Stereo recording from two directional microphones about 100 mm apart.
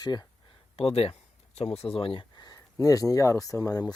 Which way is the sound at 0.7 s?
75° left (ahead or behind).